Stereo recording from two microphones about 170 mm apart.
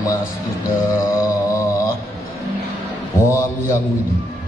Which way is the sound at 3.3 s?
15° left (ahead or behind).